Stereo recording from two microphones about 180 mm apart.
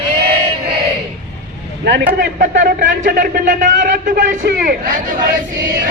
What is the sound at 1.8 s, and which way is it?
A man's voice, 60° right (ahead or behind).